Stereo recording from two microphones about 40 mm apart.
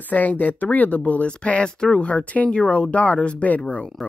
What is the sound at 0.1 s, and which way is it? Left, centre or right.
Speech, left.